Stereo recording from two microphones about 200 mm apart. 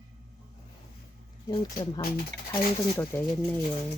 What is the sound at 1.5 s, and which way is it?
Speech, 20° left (ahead or behind).